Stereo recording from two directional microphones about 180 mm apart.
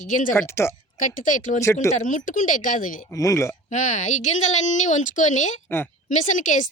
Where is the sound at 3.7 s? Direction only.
45° left (ahead or behind).